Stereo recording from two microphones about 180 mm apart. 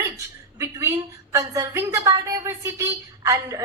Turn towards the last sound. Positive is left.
turn(degrees=-15)  # may be behind; listen again after turning